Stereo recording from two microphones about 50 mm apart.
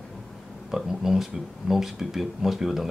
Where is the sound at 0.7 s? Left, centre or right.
Centre.